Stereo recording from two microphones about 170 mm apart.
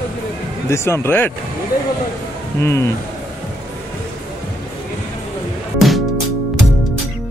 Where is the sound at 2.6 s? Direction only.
15° left (ahead or behind).